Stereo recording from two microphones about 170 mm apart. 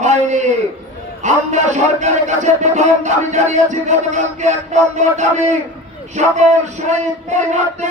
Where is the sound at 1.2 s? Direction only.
45° right (ahead or behind).